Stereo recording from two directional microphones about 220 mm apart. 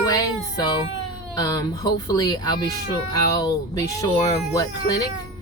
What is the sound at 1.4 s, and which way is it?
Speech, 15° left (ahead or behind).